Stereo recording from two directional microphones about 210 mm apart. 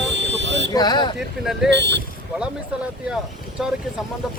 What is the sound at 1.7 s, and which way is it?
Speech, 55° right (ahead or behind).